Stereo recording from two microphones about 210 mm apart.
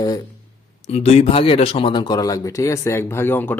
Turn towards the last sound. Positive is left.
turn(degrees=10)  # may be behind; listen again after turning